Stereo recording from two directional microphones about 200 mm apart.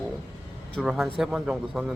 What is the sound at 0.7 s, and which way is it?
A man's voice, centre (ahead or behind).